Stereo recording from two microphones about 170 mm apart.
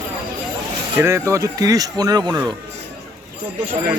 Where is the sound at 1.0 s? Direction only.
15° right (ahead or behind).